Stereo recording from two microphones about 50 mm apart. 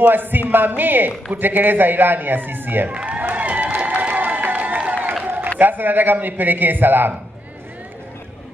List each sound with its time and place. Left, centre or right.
0.0 s a man's voice: right
2.9 s a sound: right
5.6 s a man's voice: right